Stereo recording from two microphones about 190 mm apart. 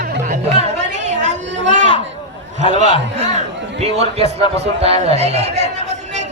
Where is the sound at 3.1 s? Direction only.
35° right (ahead or behind).